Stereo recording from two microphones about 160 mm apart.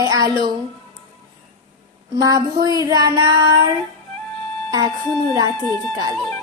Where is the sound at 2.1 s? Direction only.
25° right (ahead or behind).